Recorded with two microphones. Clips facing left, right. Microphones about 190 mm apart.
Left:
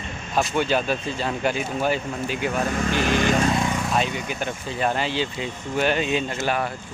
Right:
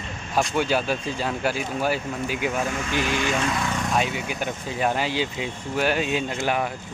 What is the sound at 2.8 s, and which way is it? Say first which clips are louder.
Speech: left 4 dB; 45° left (ahead or behind).